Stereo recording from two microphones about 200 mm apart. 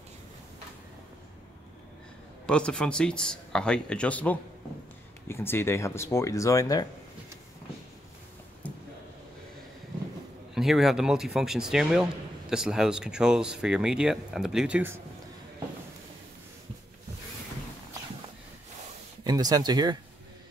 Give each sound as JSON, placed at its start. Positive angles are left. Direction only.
{"t": 2.4, "sound": "speech", "side_deg": 5}
{"t": 8.6, "sound": "a sound", "side_deg": 5}
{"t": 10.5, "sound": "speech", "side_deg": 0}
{"t": 19.2, "sound": "speech", "side_deg": -20}